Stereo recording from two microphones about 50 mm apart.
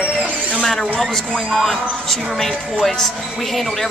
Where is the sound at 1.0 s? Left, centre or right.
Centre.